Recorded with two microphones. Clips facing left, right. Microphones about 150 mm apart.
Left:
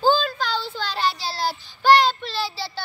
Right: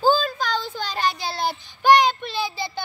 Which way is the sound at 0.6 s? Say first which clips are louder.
Even; 15° right (ahead or behind).